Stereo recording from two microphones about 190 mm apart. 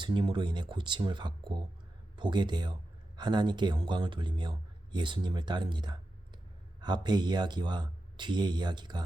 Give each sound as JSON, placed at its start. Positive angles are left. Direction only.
{"t": 0.0, "sound": "a man's voice", "side_deg": -25}